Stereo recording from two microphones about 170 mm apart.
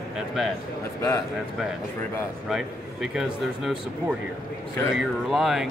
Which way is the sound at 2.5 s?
5° right (ahead or behind).